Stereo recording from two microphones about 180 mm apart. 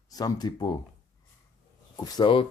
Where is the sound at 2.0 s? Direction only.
25° left (ahead or behind).